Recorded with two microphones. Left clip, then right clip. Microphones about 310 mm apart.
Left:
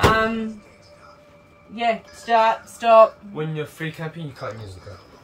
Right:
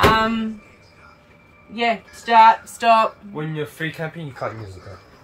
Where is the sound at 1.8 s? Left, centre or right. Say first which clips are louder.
Right 1 dB; centre.